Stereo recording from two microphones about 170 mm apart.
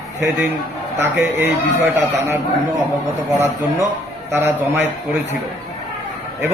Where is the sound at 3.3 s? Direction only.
15° right (ahead or behind).